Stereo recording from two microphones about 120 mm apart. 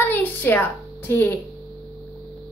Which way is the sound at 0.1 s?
15° left (ahead or behind).